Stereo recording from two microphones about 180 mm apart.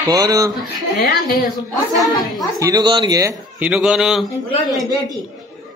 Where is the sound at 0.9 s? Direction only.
60° left (ahead or behind).